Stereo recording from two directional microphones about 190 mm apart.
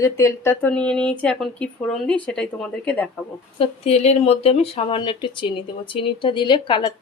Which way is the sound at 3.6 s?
35° left (ahead or behind).